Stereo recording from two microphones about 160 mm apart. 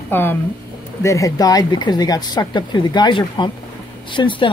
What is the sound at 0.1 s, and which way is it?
Speech, 15° left (ahead or behind).